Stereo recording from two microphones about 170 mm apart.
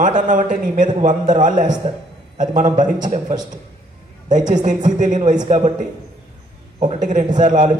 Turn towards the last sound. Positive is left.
turn(degrees=-50)  # may be behind; listen again after turning